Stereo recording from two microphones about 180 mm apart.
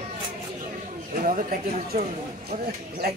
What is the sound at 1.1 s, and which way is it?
Speech, 45° right (ahead or behind).